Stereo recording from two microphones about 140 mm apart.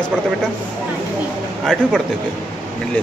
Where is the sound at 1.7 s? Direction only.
5° left (ahead or behind).